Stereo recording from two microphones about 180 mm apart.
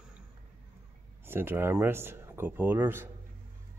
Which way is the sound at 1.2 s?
10° right (ahead or behind).